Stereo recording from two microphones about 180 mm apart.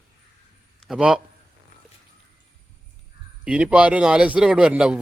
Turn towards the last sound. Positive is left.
turn(degrees=-5)  # may be behind; listen again after turning